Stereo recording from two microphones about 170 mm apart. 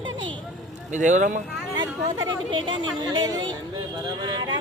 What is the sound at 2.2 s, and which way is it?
Speech, 30° right (ahead or behind).